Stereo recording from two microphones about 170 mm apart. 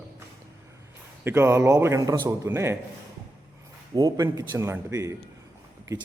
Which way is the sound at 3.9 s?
20° right (ahead or behind).